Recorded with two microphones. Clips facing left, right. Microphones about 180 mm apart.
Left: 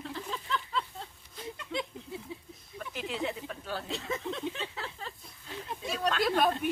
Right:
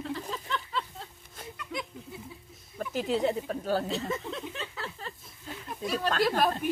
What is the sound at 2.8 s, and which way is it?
Speech, 40° right (ahead or behind).